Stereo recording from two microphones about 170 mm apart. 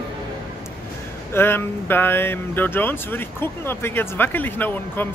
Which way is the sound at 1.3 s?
15° left (ahead or behind).